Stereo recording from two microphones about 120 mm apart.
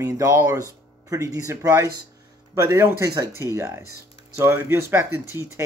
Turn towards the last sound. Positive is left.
turn(degrees=-20)  # may be behind; listen again after turning